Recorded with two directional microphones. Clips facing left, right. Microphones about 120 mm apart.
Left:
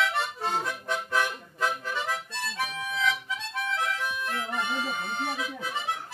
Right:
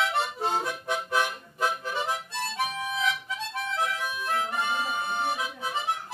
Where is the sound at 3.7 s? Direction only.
15° right (ahead or behind).